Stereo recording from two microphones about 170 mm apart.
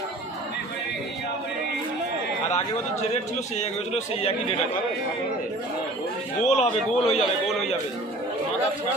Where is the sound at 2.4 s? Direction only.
40° left (ahead or behind).